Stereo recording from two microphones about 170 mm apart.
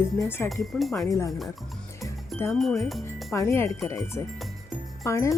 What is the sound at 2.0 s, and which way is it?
Music, 15° left (ahead or behind).